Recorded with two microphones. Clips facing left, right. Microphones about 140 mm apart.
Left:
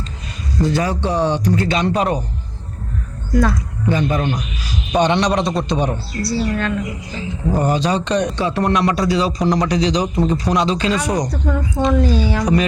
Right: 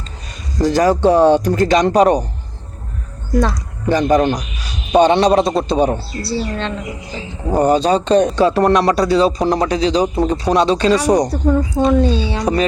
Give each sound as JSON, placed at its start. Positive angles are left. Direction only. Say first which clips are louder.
{"t": 0.7, "sound": "speech", "louder": "right 10 dB", "side_deg": -40}
{"t": 3.8, "sound": "a man's voice", "louder": "right 5 dB", "side_deg": -40}
{"t": 5.4, "sound": "a man's voice", "louder": "right 4 dB", "side_deg": 0}
{"t": 5.6, "sound": "a man's voice", "louder": "right 5 dB", "side_deg": -30}